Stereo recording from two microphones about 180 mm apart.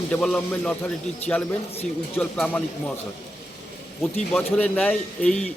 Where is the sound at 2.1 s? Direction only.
10° left (ahead or behind).